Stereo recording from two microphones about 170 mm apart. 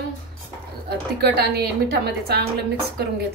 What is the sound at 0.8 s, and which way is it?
A woman's voice, 70° right (ahead or behind).